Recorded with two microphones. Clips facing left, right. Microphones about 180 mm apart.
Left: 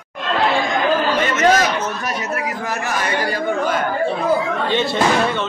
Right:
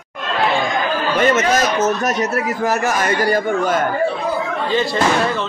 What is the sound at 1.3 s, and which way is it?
A man's voice, 45° right (ahead or behind).